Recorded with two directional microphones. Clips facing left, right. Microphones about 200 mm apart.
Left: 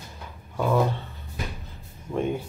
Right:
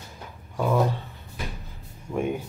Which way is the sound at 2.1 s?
10° right (ahead or behind).